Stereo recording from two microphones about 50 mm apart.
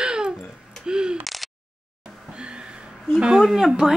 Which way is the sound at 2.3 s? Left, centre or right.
Right.